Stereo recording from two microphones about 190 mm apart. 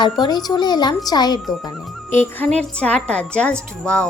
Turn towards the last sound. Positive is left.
turn(degrees=5)  # may be behind; listen again after turning